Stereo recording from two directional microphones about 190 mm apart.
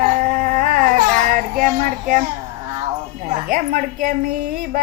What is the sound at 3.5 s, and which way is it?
Speech, 45° right (ahead or behind).